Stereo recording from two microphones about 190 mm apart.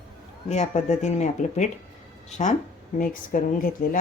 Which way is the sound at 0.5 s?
40° left (ahead or behind).